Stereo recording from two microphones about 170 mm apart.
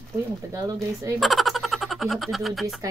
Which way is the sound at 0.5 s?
20° right (ahead or behind).